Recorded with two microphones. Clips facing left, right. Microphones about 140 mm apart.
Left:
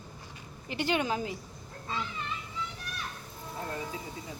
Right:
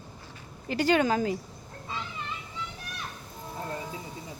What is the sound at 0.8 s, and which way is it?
Speech, 45° right (ahead or behind).